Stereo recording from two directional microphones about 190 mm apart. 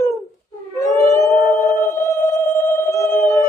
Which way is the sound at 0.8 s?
15° left (ahead or behind).